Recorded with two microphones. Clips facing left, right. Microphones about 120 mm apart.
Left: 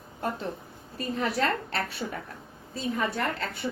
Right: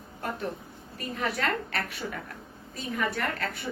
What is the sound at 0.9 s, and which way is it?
A woman's voice, 30° left (ahead or behind).